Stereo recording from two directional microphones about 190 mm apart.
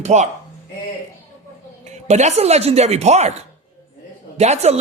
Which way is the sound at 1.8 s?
35° right (ahead or behind).